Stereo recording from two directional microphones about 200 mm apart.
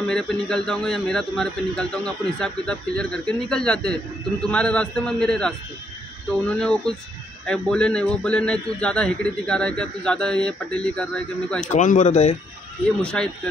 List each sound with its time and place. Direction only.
0.1 s a man's voice: 5° left (ahead or behind)
6.6 s a man's voice: 5° left (ahead or behind)
11.6 s speech: 40° left (ahead or behind)
13.0 s a man's voice: 5° left (ahead or behind)